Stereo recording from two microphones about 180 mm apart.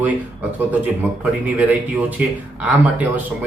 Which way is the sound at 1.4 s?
10° right (ahead or behind).